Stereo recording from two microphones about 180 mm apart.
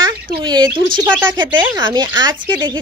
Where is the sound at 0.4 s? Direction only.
25° right (ahead or behind).